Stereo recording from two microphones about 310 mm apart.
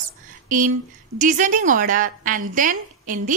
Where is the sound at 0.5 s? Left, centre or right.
Right.